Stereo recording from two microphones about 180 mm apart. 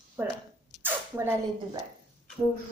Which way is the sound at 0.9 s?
10° right (ahead or behind).